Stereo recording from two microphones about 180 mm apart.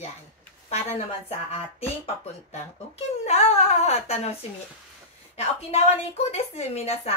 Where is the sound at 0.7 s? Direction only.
35° left (ahead or behind).